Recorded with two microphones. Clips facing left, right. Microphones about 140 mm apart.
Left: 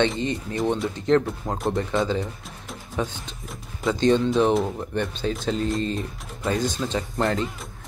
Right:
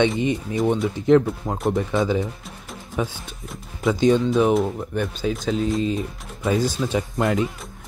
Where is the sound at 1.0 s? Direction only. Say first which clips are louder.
Right 5 dB; 15° right (ahead or behind).